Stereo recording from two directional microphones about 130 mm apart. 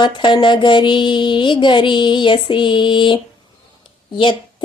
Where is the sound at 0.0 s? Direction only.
40° left (ahead or behind).